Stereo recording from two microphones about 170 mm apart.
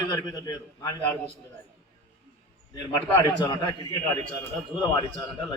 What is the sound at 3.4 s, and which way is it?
Speech, 25° left (ahead or behind).